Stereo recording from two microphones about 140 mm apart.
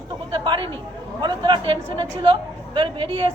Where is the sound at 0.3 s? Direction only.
35° right (ahead or behind).